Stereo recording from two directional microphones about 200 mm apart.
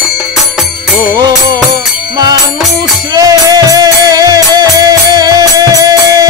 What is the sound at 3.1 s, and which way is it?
Music, 20° right (ahead or behind).